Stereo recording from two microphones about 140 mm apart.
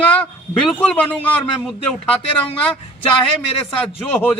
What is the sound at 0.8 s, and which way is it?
Speech, 10° left (ahead or behind).